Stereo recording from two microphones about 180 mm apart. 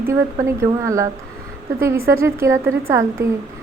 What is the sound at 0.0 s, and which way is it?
A woman's voice, 15° right (ahead or behind).